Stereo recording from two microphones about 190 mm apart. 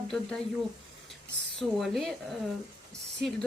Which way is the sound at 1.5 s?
Centre (ahead or behind).